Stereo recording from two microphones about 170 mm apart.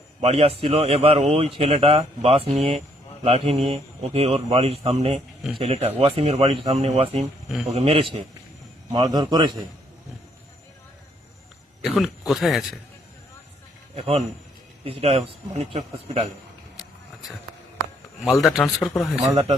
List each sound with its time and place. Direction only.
0.2 s speech: 35° right (ahead or behind)
8.9 s a man's voice: 25° right (ahead or behind)
11.9 s a man's voice: centre (ahead or behind)
13.9 s speech: 35° right (ahead or behind)
18.3 s a man's voice: centre (ahead or behind)